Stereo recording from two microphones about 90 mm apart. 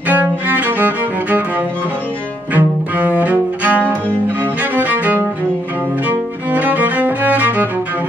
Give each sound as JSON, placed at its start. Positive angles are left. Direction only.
{"t": 0.1, "sound": "cello", "side_deg": -20}
{"t": 2.5, "sound": "cello", "side_deg": -20}
{"t": 4.4, "sound": "music", "side_deg": -20}